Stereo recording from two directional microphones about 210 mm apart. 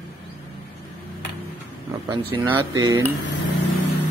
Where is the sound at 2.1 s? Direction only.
25° right (ahead or behind).